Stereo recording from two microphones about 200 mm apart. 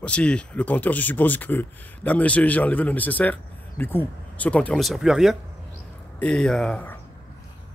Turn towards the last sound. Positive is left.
turn(degrees=5)  # may be behind; listen again after turning